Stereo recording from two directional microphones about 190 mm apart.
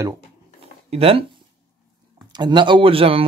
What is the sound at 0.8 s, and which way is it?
Speech, 30° right (ahead or behind).